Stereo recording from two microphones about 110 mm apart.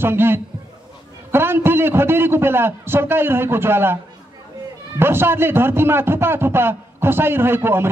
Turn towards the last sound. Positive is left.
turn(degrees=-20)  # may be behind; listen again after turning